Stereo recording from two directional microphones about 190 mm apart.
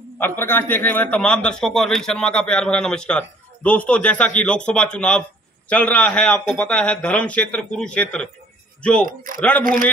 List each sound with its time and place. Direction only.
0.2 s a man's voice: 10° left (ahead or behind)
9.4 s a man's voice: 5° left (ahead or behind)